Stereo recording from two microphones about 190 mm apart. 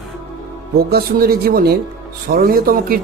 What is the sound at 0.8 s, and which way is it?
Speech, 55° right (ahead or behind).